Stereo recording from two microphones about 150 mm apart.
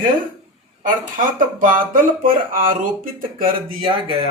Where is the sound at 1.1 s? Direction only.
65° right (ahead or behind).